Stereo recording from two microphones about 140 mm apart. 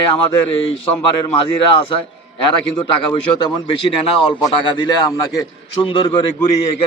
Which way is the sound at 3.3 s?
40° left (ahead or behind).